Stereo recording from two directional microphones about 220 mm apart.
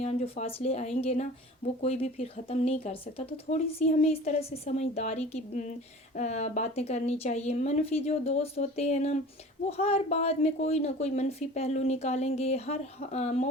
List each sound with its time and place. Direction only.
0.0 s speech: 30° left (ahead or behind)